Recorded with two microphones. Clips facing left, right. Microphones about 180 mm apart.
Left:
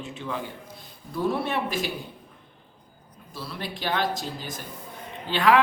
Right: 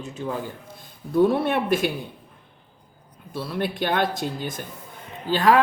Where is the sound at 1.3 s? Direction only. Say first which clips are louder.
Right 5 dB; 55° right (ahead or behind).